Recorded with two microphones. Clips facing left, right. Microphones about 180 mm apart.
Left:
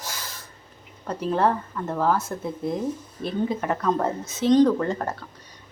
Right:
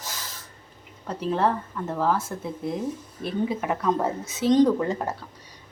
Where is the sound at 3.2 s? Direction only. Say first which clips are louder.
Left 1 dB; 5° right (ahead or behind).